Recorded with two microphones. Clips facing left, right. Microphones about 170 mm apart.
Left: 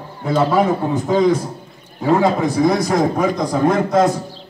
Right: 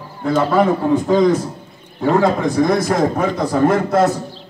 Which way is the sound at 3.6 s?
5° right (ahead or behind).